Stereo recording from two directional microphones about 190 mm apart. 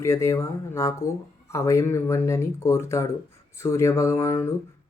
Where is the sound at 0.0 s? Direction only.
15° left (ahead or behind).